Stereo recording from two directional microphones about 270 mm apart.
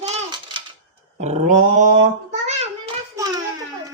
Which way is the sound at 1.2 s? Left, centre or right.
Right.